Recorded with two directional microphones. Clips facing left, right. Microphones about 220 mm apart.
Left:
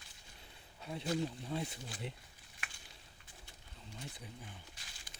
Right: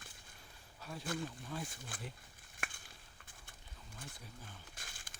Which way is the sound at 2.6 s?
50° right (ahead or behind).